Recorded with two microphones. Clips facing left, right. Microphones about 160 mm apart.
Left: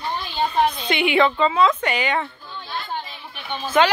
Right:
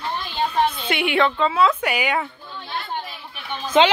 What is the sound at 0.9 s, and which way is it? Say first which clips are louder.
A woman's voice: left 2 dB; centre (ahead or behind).